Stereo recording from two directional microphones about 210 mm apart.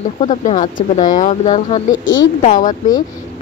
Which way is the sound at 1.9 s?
65° left (ahead or behind).